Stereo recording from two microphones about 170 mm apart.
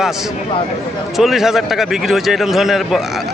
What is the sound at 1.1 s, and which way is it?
A man's voice, centre (ahead or behind).